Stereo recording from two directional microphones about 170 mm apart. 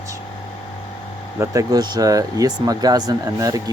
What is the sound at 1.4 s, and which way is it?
Speech, 20° right (ahead or behind).